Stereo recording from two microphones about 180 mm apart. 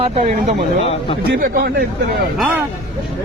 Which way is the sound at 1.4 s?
55° right (ahead or behind).